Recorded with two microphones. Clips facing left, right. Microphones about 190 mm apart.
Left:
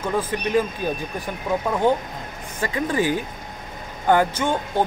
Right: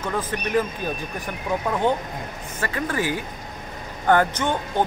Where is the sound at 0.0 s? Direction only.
10° left (ahead or behind).